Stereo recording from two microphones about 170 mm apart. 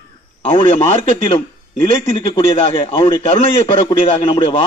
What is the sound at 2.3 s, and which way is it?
A man's voice, 30° left (ahead or behind).